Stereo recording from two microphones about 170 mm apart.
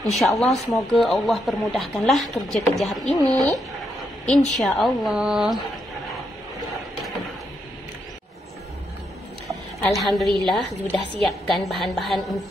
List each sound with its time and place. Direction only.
0.0 s speech: centre (ahead or behind)
4.5 s speech: centre (ahead or behind)
9.5 s speech: centre (ahead or behind)